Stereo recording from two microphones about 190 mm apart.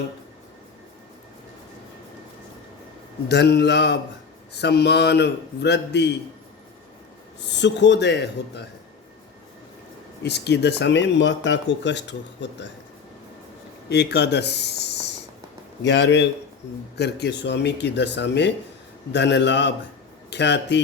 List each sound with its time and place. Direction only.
3.2 s a man's voice: 60° left (ahead or behind)
7.4 s a man's voice: 65° left (ahead or behind)
10.2 s speech: 60° left (ahead or behind)
13.9 s a man's voice: 60° left (ahead or behind)
15.8 s a man's voice: 70° left (ahead or behind)